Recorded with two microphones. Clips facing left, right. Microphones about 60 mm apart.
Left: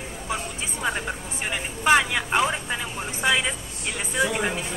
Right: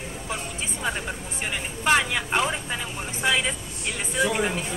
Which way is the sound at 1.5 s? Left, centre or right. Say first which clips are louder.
Left 3 dB; centre.